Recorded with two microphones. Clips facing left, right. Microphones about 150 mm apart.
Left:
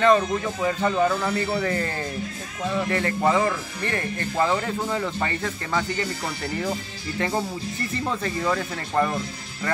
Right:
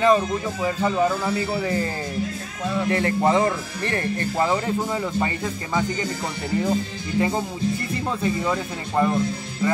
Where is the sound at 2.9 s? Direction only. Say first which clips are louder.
Right 3 dB; 20° right (ahead or behind).